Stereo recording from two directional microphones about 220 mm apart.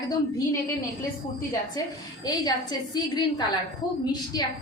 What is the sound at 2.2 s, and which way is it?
A woman's voice, 20° left (ahead or behind).